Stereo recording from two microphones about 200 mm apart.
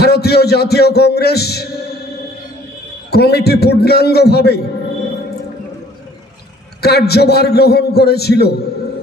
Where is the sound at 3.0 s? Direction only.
55° left (ahead or behind).